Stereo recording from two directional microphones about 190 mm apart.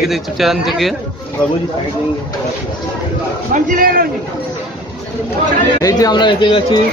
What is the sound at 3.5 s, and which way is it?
Speech, 45° right (ahead or behind).